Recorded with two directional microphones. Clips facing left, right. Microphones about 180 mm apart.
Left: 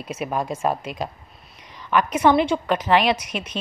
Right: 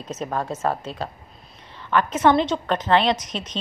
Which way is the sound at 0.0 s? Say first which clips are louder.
Left 1 dB; 10° left (ahead or behind).